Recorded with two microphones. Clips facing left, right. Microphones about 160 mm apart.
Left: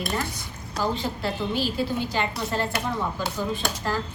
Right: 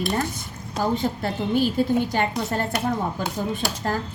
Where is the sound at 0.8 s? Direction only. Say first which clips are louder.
Right 3 dB; 50° right (ahead or behind).